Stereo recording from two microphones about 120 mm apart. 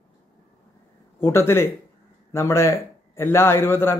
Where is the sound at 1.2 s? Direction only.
20° left (ahead or behind).